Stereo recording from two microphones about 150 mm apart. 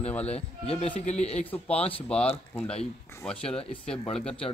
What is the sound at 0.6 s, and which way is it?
Speech, 45° left (ahead or behind).